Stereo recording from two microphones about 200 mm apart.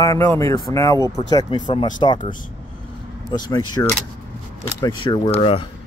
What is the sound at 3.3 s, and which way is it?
Speech, 20° left (ahead or behind).